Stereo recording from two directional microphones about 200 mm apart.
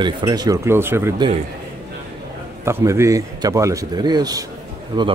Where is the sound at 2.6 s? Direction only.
15° right (ahead or behind).